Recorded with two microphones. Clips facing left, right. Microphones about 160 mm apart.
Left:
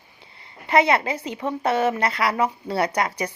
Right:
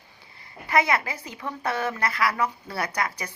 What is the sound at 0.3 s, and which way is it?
Speech, 25° left (ahead or behind).